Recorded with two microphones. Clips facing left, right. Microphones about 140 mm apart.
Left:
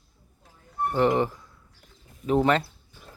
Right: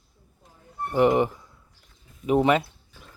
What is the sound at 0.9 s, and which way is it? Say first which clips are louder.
Speech: right 3 dB; 15° right (ahead or behind).